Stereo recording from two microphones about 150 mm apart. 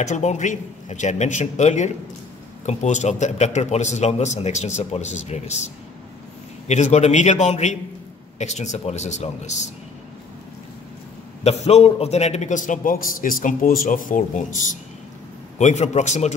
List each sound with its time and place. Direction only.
0.0 s a man's voice: 50° left (ahead or behind)
6.7 s a man's voice: 50° left (ahead or behind)
11.4 s a man's voice: 45° left (ahead or behind); by 14.6 s 60° left (ahead or behind)
15.5 s a man's voice: 50° left (ahead or behind)